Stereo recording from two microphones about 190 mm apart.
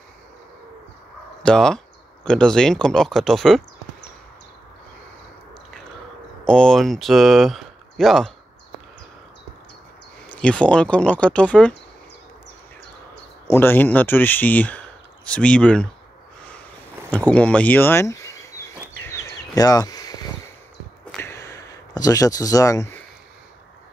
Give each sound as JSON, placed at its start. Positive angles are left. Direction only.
{"t": 1.4, "sound": "speech", "side_deg": 5}
{"t": 6.4, "sound": "speech", "side_deg": 5}
{"t": 10.2, "sound": "speech", "side_deg": 5}
{"t": 13.5, "sound": "speech", "side_deg": 10}
{"t": 17.3, "sound": "speech", "side_deg": 5}
{"t": 18.9, "sound": "a sound", "side_deg": 15}